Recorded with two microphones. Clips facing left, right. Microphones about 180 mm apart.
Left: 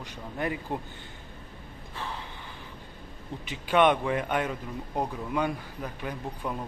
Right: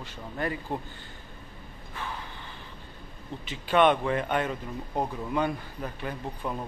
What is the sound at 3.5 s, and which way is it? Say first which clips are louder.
Speech: even; 15° left (ahead or behind).